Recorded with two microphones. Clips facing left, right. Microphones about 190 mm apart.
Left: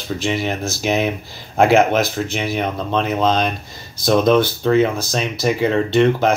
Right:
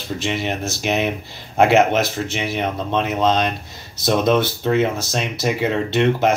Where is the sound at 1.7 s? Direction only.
20° right (ahead or behind).